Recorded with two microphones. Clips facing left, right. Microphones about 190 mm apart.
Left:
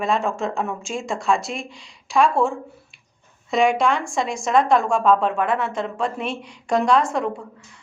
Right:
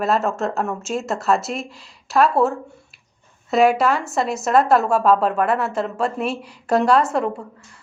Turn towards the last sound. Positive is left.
turn(degrees=-5)  # may be behind; listen again after turning